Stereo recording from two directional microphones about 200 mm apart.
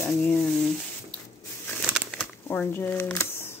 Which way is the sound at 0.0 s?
10° left (ahead or behind).